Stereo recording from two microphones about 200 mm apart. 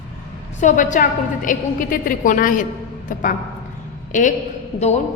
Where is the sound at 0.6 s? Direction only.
40° left (ahead or behind).